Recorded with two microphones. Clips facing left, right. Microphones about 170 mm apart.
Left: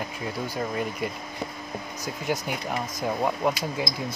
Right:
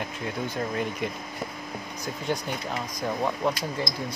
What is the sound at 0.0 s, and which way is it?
Speech, centre (ahead or behind).